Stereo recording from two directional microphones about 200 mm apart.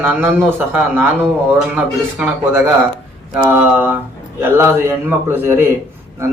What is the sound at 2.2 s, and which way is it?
A man's voice, 10° right (ahead or behind).